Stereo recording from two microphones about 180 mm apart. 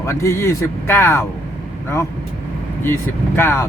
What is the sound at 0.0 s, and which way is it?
A man's voice, 15° left (ahead or behind).